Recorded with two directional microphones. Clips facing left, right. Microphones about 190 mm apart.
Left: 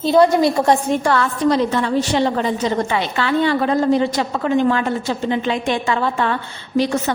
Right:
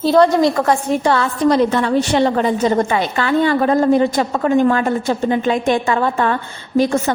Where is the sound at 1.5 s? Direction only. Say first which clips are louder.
Right 4 dB; 60° right (ahead or behind).